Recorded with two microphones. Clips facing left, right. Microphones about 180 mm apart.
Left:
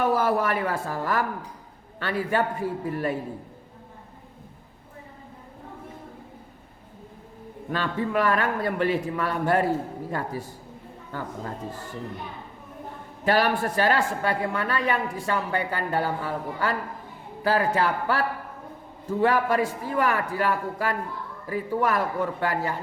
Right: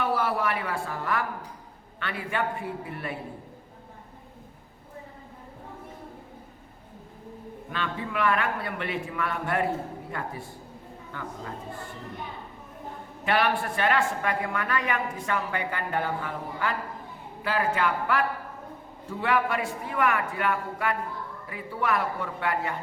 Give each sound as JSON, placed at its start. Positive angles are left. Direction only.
{"t": 0.0, "sound": "a woman's voice", "side_deg": 45}
{"t": 7.7, "sound": "a woman's voice", "side_deg": 40}
{"t": 13.2, "sound": "a woman's voice", "side_deg": 40}